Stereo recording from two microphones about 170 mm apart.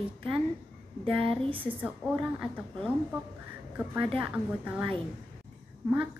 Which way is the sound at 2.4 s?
5° right (ahead or behind).